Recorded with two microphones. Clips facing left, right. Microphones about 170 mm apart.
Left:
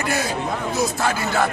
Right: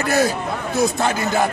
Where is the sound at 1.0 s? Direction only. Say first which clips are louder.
Right 2 dB; 25° right (ahead or behind).